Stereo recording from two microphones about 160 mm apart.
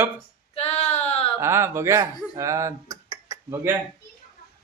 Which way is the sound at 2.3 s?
20° right (ahead or behind).